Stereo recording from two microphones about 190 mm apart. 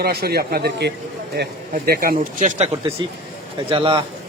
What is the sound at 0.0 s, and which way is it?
A man's voice, 55° right (ahead or behind).